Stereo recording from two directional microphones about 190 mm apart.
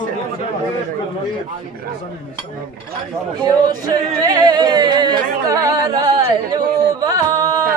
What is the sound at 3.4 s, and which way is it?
Speech, 20° right (ahead or behind).